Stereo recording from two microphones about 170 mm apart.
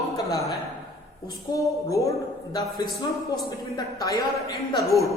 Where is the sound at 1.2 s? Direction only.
20° left (ahead or behind).